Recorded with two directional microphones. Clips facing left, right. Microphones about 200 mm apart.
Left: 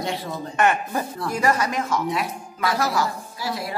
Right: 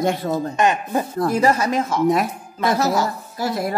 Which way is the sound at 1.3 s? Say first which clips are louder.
Right 4 dB; 30° right (ahead or behind).